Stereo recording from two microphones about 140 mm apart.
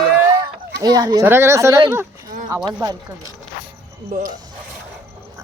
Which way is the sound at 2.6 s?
30° right (ahead or behind).